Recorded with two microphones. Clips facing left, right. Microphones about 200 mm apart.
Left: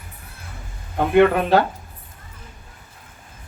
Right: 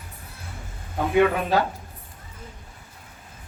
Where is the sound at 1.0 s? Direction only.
65° left (ahead or behind).